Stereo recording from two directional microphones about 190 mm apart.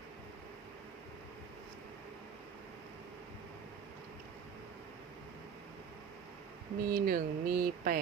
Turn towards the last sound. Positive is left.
turn(degrees=-50)  # may be behind; listen again after turning